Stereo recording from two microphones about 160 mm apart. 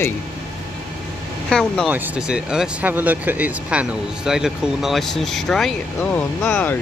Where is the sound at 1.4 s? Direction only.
5° left (ahead or behind).